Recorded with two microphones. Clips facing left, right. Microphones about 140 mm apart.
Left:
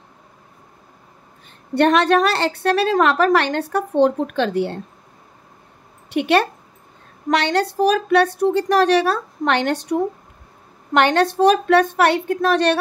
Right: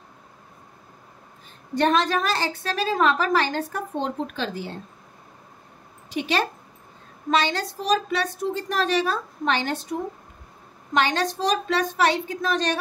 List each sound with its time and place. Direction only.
1.8 s a woman's voice: 65° left (ahead or behind)
6.0 s a woman's voice: 60° left (ahead or behind)
10.9 s a woman's voice: 60° left (ahead or behind)